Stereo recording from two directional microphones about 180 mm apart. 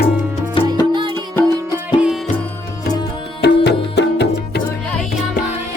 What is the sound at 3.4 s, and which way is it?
Music, 75° left (ahead or behind).